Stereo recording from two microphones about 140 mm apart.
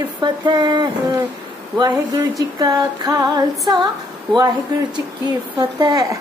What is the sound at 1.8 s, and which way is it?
Female singing, 25° right (ahead or behind).